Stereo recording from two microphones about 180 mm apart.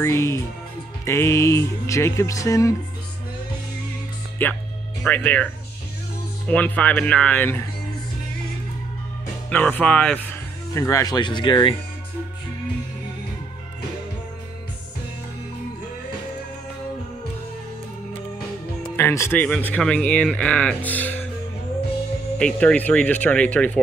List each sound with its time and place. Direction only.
0.0 s speech: 15° left (ahead or behind)
4.4 s speech: 10° left (ahead or behind)
9.5 s speech: 10° left (ahead or behind)
10.7 s speech: 15° left (ahead or behind)
18.8 s speech: 10° left (ahead or behind)
22.4 s speech: 5° left (ahead or behind)